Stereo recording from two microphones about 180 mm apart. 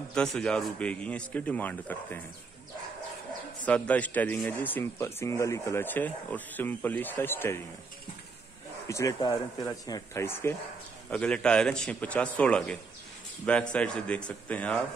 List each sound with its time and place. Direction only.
0.1 s speech: 5° left (ahead or behind)
3.6 s speech: 5° left (ahead or behind)
8.8 s speech: 15° left (ahead or behind)